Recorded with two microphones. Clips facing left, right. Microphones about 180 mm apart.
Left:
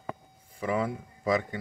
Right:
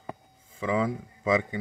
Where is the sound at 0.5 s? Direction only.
90° right.